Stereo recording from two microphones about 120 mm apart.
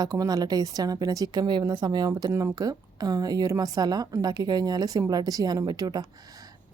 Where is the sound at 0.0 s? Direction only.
30° right (ahead or behind).